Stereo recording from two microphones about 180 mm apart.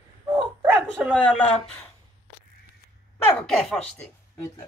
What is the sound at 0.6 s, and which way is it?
Speech, 5° right (ahead or behind).